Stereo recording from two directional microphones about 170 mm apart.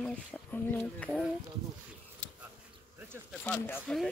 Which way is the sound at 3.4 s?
10° left (ahead or behind).